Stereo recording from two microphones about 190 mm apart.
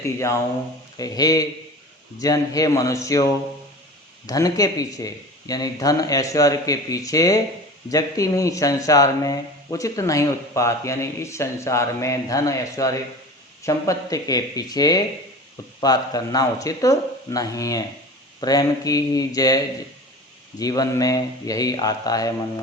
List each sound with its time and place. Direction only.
0.0 s speech: 15° left (ahead or behind)